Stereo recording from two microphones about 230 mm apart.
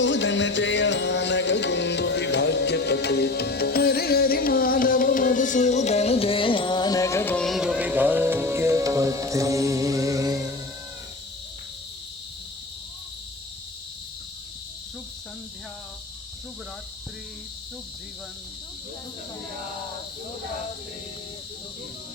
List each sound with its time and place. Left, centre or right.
0.0 s music: left; by 10.5 s centre